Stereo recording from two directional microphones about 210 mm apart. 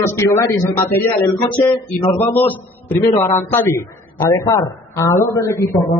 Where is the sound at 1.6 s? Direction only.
20° left (ahead or behind).